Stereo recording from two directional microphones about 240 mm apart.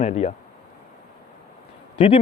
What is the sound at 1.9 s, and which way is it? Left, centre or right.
Speech, left.